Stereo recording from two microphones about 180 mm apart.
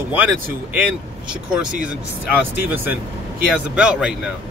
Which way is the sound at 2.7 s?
10° right (ahead or behind).